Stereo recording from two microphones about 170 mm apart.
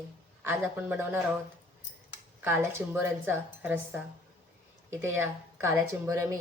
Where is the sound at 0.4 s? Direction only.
10° right (ahead or behind).